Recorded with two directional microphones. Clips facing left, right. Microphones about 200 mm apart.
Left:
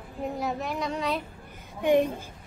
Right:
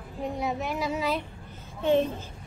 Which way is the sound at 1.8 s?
15° left (ahead or behind).